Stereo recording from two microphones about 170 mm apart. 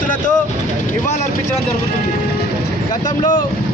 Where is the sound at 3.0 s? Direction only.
50° left (ahead or behind).